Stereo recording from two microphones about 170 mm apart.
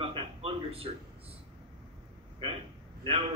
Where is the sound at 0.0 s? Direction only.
30° right (ahead or behind).